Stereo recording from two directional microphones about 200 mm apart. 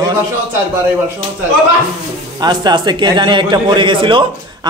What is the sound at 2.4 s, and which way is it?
A man's voice, 20° right (ahead or behind).